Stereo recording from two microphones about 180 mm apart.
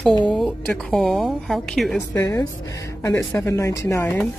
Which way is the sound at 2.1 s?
15° left (ahead or behind).